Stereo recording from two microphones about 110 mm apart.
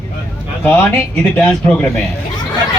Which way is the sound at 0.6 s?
15° left (ahead or behind).